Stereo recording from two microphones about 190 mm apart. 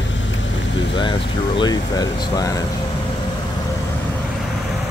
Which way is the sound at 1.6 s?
20° left (ahead or behind).